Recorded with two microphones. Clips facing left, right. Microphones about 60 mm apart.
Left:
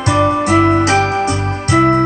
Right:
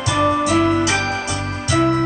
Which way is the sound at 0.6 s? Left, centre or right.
Left.